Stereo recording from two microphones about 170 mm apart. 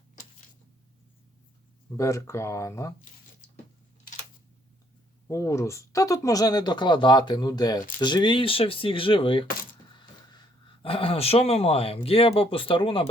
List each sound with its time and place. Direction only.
2.0 s speech: 15° left (ahead or behind)
5.3 s speech: 15° left (ahead or behind)
9.9 s a sound: 25° left (ahead or behind)
10.8 s speech: 35° left (ahead or behind)